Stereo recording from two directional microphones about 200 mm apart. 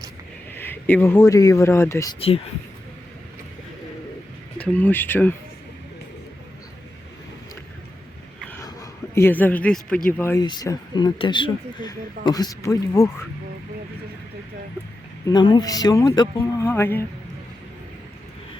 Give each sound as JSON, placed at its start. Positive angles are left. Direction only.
{"t": 0.5, "sound": "speech", "side_deg": 10}
{"t": 4.5, "sound": "speech", "side_deg": 10}
{"t": 8.4, "sound": "a sound", "side_deg": 15}
{"t": 10.1, "sound": "speech", "side_deg": 10}
{"t": 10.4, "sound": "speech", "side_deg": 20}
{"t": 15.3, "sound": "speech", "side_deg": 20}